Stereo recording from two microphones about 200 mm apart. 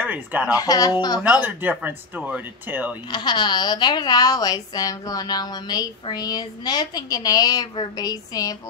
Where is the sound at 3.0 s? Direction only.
20° left (ahead or behind).